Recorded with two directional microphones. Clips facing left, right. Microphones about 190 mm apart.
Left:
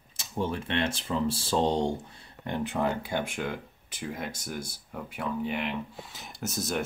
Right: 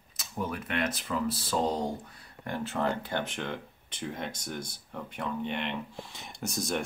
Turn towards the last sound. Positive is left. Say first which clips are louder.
# left 1 dB
turn(degrees=0)  # may be behind; listen again after turning